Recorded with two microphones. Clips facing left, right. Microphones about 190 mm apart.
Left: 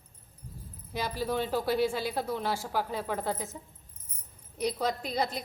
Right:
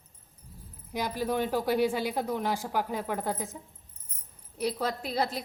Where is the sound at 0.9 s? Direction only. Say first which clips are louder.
Right 2 dB; 15° right (ahead or behind).